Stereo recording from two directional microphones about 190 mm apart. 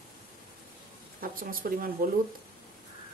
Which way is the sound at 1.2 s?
50° right (ahead or behind).